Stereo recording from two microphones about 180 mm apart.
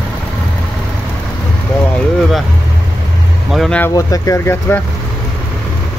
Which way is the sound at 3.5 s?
5° left (ahead or behind).